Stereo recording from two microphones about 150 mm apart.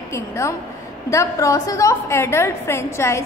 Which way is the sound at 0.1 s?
20° left (ahead or behind).